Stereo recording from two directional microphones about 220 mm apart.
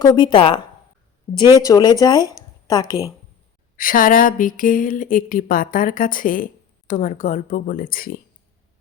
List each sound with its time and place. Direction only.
0.0 s a woman's voice: 20° left (ahead or behind)
3.8 s speech: 40° left (ahead or behind)